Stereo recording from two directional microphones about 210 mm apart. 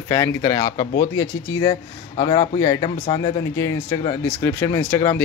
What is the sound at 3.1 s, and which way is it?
Speech, 15° left (ahead or behind).